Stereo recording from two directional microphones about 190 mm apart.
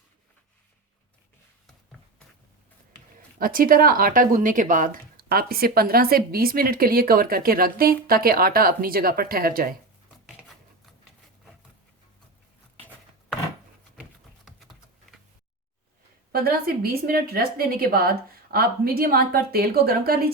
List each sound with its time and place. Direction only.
3.2 s speech: 50° right (ahead or behind)
14.4 s a sound: centre (ahead or behind)
16.3 s speech: 50° right (ahead or behind)